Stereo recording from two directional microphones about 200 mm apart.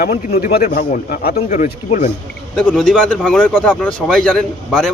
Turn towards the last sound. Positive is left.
turn(degrees=5)  # may be behind; listen again after turning